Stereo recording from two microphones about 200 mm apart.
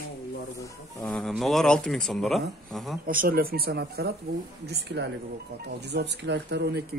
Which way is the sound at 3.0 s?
45° right (ahead or behind).